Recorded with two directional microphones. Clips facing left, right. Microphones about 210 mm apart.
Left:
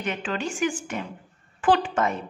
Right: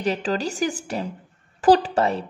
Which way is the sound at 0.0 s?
35° right (ahead or behind).